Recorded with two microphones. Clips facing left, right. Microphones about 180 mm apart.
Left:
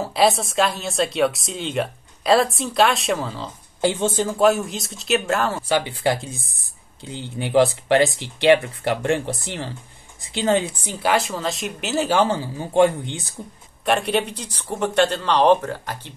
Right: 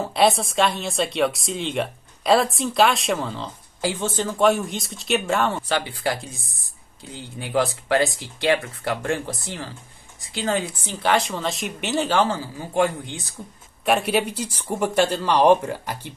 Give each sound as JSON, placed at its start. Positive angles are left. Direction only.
{"t": 0.0, "sound": "speech", "side_deg": 0}
{"t": 3.8, "sound": "speech", "side_deg": 25}
{"t": 4.1, "sound": "speech", "side_deg": 10}
{"t": 5.7, "sound": "speech", "side_deg": 20}
{"t": 12.5, "sound": "speech", "side_deg": 25}
{"t": 13.8, "sound": "speech", "side_deg": -5}